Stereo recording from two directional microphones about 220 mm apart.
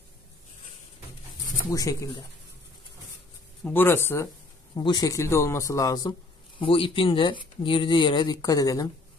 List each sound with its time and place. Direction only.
1.7 s speech: 15° left (ahead or behind)
3.6 s speech: 10° left (ahead or behind)